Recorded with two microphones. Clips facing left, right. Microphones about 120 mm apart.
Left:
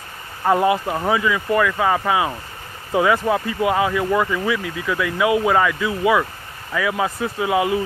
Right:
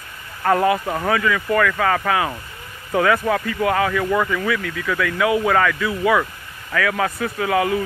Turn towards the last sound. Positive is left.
turn(degrees=15)  # may be behind; listen again after turning